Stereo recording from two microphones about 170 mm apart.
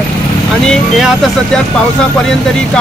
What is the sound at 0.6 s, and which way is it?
Speech, 5° left (ahead or behind).